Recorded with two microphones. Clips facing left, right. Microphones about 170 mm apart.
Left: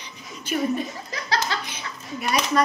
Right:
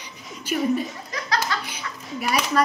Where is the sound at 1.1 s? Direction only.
30° left (ahead or behind).